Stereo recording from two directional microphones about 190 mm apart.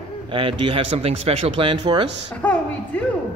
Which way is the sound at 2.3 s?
5° left (ahead or behind).